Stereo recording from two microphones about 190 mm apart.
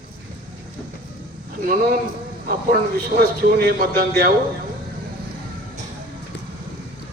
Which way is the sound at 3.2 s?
50° right (ahead or behind).